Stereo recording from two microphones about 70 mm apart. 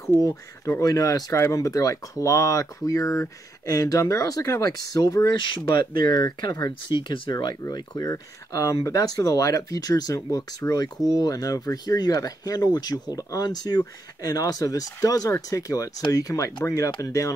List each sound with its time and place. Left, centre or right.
0.3 s speech: left
0.8 s speech: left
1.3 s speech: left
6.9 s speech: right
7.2 s speech: left
8.1 s speech: left